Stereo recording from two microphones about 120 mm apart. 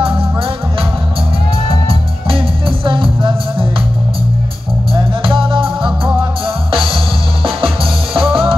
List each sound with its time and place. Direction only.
1.9 s music: 50° right (ahead or behind)
5.2 s music: 45° right (ahead or behind)